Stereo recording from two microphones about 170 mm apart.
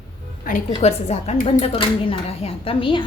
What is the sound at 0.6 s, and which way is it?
Speech, 40° left (ahead or behind).